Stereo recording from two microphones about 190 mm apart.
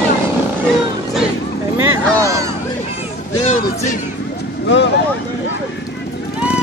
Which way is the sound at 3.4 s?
35° left (ahead or behind).